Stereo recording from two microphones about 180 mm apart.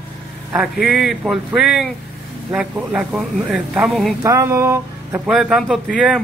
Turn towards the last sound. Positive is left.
turn(degrees=-5)  # may be behind; listen again after turning